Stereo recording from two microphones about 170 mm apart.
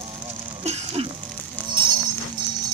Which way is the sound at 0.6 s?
40° right (ahead or behind).